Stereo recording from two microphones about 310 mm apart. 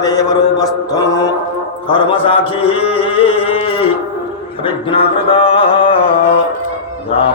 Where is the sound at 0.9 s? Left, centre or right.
Centre.